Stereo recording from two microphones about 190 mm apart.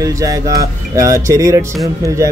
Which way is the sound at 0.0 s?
15° right (ahead or behind).